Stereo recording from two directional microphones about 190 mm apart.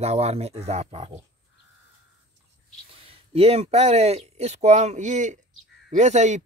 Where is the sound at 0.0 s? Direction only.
35° right (ahead or behind).